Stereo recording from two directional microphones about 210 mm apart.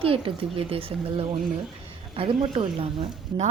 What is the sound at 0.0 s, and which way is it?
Speech, 25° right (ahead or behind).